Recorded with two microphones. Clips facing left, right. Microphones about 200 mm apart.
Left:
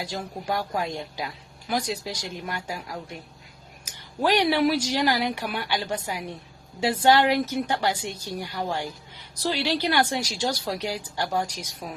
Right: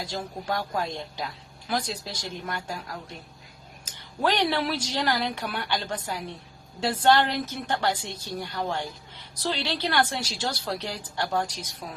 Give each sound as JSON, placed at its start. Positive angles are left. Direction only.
{"t": 0.4, "sound": "speech", "side_deg": 10}
{"t": 3.8, "sound": "speech", "side_deg": 10}